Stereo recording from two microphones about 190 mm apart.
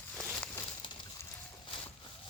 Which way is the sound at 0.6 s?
25° left (ahead or behind).